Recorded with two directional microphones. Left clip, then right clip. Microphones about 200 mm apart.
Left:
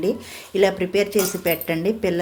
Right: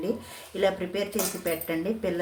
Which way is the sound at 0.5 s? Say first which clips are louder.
Left 8 dB; 35° left (ahead or behind).